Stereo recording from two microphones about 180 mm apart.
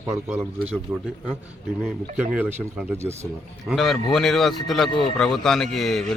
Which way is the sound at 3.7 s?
Centre (ahead or behind).